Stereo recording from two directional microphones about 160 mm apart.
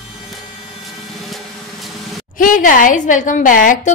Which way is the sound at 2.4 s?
60° left (ahead or behind).